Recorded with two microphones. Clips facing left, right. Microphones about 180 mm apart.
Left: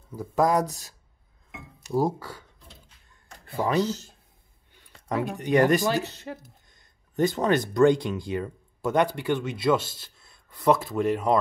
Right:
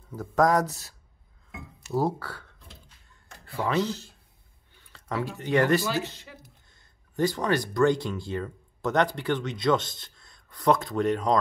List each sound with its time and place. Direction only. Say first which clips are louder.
0.1 s speech: even; 10° left (ahead or behind)
3.8 s speech: left 2 dB; 40° left (ahead or behind)
4.9 s speech: left 3 dB; 15° left (ahead or behind)
6.0 s speech: left 5 dB; 40° left (ahead or behind)
6.7 s speech: left 2 dB; 20° left (ahead or behind)